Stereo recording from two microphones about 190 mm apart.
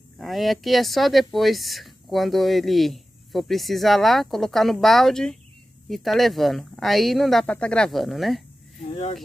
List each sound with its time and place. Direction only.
0.2 s speech: centre (ahead or behind)
8.9 s speech: 35° left (ahead or behind)